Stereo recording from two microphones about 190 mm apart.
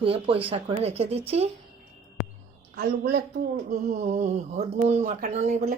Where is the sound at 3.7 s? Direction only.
35° right (ahead or behind).